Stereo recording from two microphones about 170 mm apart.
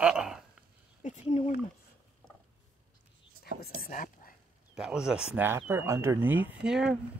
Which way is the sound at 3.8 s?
55° left (ahead or behind).